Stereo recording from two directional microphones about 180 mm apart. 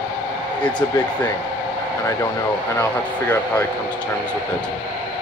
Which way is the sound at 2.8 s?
10° left (ahead or behind).